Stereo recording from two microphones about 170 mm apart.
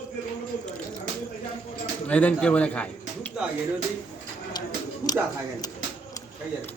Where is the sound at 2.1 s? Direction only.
10° left (ahead or behind).